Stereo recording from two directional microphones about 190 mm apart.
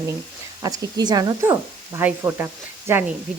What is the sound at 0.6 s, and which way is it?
Speech, 20° right (ahead or behind).